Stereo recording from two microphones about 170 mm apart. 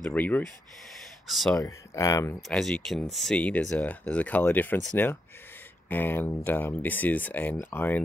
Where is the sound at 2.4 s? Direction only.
Centre (ahead or behind).